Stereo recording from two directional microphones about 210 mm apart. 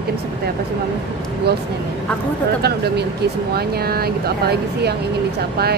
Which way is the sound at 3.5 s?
50° right (ahead or behind).